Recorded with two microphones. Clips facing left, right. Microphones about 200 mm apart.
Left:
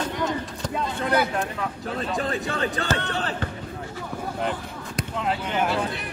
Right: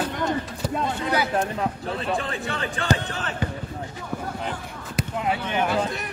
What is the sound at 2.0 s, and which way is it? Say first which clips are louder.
Speech: left 5 dB; 40° left (ahead or behind).